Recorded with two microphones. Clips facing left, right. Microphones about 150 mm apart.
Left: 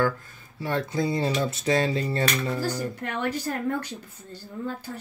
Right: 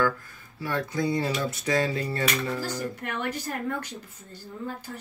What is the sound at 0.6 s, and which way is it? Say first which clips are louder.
Speech: left 2 dB; 25° left (ahead or behind).